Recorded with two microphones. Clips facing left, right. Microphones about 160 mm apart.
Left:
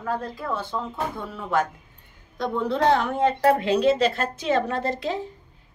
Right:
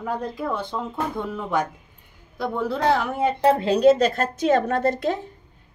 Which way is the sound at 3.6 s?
40° right (ahead or behind).